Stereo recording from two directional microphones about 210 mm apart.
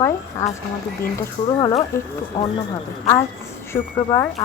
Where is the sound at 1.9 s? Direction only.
15° left (ahead or behind).